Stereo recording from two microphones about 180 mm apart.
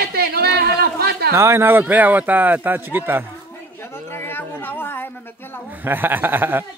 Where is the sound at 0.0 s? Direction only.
60° right (ahead or behind).